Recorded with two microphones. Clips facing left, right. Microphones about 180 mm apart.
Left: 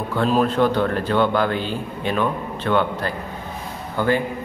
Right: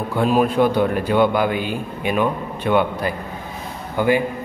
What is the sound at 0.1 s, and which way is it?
A man's voice, 10° right (ahead or behind).